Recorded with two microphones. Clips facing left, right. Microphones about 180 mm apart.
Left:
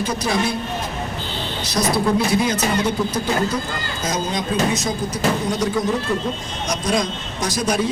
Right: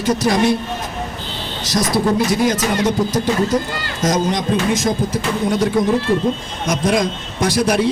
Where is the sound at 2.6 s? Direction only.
90° right.